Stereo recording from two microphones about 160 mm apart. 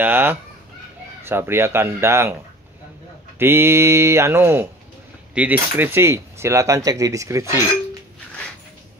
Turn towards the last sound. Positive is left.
turn(degrees=-20)  # may be behind; listen again after turning